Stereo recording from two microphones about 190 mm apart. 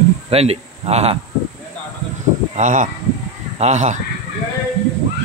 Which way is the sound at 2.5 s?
40° right (ahead or behind).